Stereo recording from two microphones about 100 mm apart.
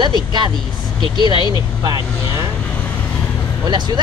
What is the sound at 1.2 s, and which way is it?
Speech, 50° left (ahead or behind).